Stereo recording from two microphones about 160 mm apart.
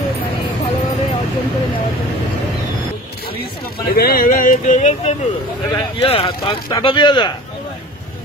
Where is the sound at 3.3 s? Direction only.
70° left (ahead or behind); by 5.1 s 50° left (ahead or behind).